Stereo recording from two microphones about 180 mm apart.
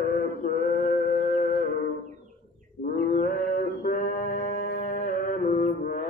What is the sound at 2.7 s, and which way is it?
Mantra, 50° left (ahead or behind).